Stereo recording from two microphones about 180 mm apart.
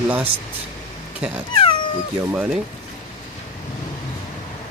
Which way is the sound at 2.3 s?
5° right (ahead or behind).